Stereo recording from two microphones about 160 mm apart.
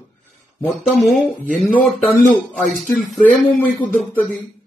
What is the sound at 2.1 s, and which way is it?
Speech, 60° left (ahead or behind).